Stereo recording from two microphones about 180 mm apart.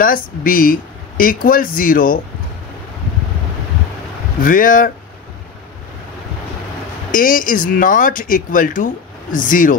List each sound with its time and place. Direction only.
0.0 s speech: 50° left (ahead or behind)
4.4 s speech: 50° left (ahead or behind)
7.1 s speech: 50° left (ahead or behind)